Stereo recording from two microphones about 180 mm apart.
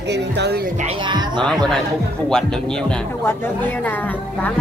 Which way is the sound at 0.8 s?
25° right (ahead or behind).